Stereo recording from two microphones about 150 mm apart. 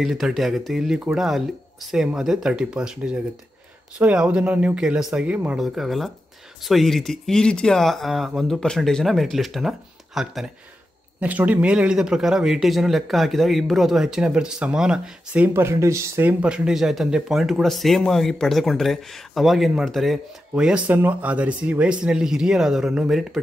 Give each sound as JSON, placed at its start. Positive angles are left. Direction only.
{"t": 0.0, "sound": "speech", "side_deg": 0}